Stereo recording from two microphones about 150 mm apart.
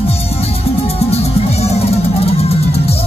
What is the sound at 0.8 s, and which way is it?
Music, 45° left (ahead or behind).